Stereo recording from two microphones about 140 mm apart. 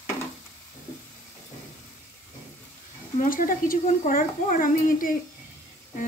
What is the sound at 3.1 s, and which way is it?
A child's voice, 80° left.